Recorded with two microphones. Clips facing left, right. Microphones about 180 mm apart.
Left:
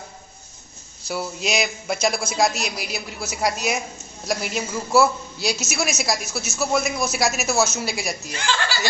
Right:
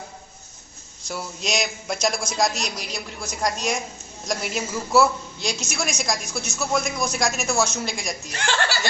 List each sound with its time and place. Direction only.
1.0 s a woman's voice: 5° left (ahead or behind)
8.3 s speech: 65° right (ahead or behind)